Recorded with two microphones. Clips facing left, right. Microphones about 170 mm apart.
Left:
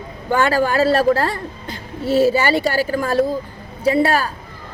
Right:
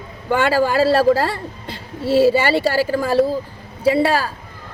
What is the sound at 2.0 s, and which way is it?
Speech, 30° right (ahead or behind).